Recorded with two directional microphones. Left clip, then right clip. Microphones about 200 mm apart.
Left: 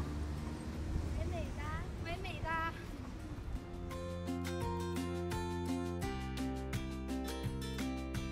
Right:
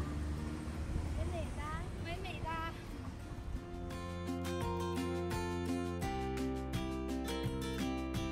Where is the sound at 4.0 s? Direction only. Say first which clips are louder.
Left 1 dB; 5° right (ahead or behind).